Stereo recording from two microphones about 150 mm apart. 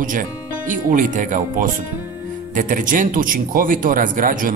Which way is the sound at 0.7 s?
60° right (ahead or behind).